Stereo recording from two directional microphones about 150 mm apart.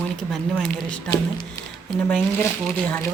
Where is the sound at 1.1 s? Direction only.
25° left (ahead or behind).